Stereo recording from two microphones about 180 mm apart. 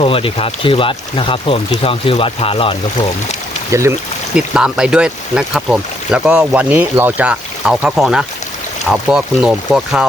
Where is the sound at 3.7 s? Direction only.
15° right (ahead or behind).